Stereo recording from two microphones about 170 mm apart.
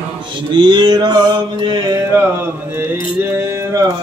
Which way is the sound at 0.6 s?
25° right (ahead or behind).